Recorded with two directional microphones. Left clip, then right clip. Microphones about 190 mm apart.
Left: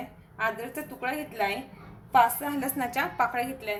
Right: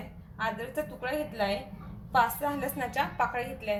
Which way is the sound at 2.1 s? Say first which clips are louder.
Left 4 dB; 30° left (ahead or behind).